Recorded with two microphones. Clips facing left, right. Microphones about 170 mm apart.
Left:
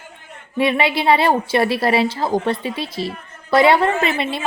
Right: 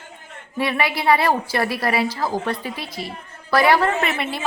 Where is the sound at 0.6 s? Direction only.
25° left (ahead or behind).